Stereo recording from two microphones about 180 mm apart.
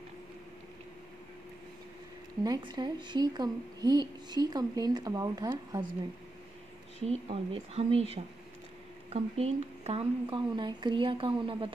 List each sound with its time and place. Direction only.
2.4 s a woman's voice: 25° right (ahead or behind)
7.0 s a woman's voice: 35° right (ahead or behind)